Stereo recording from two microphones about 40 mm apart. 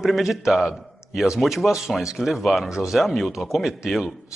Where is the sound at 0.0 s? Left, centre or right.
Centre.